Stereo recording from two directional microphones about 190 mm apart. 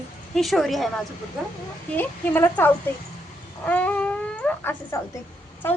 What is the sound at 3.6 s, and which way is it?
Dog, 10° left (ahead or behind).